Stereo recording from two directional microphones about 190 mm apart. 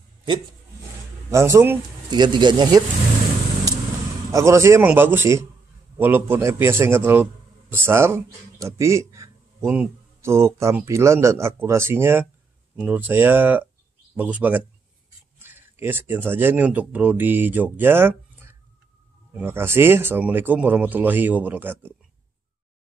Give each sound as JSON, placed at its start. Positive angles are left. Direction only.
{"t": 1.3, "sound": "speech", "side_deg": -15}
{"t": 2.0, "sound": "speech", "side_deg": -25}
{"t": 4.3, "sound": "speech", "side_deg": -15}